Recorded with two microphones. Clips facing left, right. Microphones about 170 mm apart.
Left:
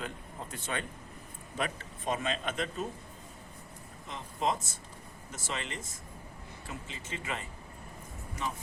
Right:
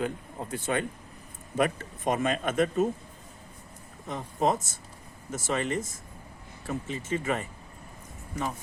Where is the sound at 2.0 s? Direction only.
50° right (ahead or behind).